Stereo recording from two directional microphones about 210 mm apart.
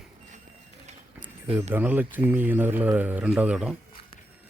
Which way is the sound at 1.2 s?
10° right (ahead or behind).